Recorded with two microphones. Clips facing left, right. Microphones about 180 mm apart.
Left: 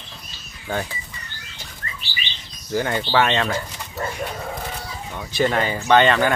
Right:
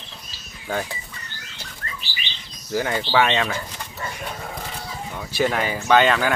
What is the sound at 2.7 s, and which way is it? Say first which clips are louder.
Speech: left 1 dB; 5° right (ahead or behind).